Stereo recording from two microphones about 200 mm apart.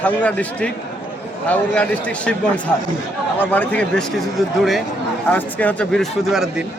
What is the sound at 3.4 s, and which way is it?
Speech, 10° left (ahead or behind).